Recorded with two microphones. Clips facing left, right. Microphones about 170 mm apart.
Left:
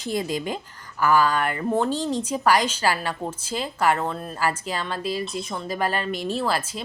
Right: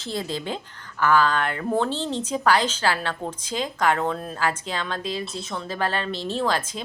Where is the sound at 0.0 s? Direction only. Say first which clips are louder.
Left 3 dB; 15° left (ahead or behind).